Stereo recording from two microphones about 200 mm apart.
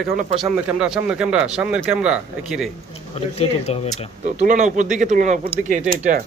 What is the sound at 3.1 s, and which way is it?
Speech, 30° left (ahead or behind).